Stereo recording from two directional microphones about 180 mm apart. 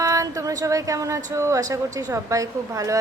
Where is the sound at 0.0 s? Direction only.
20° right (ahead or behind).